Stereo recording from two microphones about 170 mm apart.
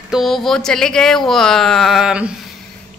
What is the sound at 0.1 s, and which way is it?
A woman's voice, centre (ahead or behind).